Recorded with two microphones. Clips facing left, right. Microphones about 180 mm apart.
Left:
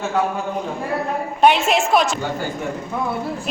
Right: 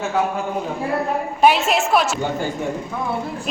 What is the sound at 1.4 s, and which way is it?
Speech, centre (ahead or behind).